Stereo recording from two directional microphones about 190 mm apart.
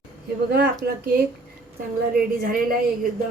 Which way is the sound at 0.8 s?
55° right (ahead or behind).